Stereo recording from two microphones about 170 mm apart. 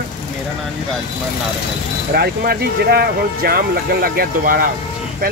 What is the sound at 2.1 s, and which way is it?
Speech, 65° right (ahead or behind).